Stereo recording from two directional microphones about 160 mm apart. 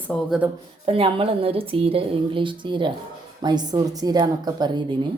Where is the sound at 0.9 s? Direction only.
35° right (ahead or behind).